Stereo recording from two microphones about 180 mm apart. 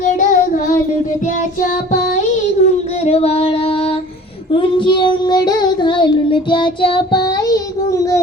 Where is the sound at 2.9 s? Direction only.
35° left (ahead or behind).